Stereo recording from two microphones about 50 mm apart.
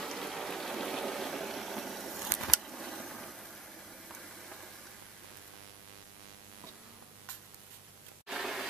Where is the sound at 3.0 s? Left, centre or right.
Centre.